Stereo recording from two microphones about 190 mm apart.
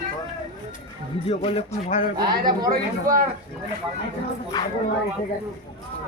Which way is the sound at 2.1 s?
20° right (ahead or behind).